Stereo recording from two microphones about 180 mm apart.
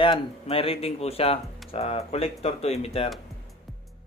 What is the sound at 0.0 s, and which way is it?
Speech, 30° left (ahead or behind).